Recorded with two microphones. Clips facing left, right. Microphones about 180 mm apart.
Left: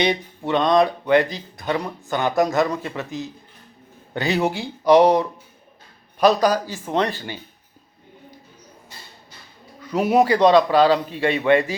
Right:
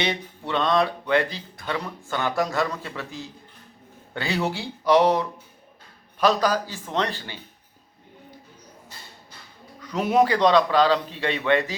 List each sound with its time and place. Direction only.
0.0 s speech: 15° left (ahead or behind)
9.8 s speech: 10° left (ahead or behind)